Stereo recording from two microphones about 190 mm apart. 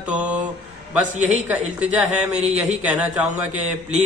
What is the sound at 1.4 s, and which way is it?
Speech, 5° right (ahead or behind).